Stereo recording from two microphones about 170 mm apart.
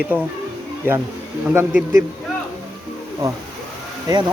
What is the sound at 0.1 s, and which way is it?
Speech, 10° right (ahead or behind).